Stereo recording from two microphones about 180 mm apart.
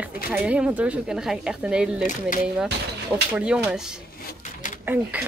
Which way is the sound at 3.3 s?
5° right (ahead or behind).